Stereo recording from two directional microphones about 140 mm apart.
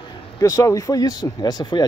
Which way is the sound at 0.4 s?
25° left (ahead or behind).